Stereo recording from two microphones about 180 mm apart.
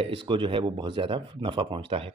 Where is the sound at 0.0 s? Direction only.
30° right (ahead or behind).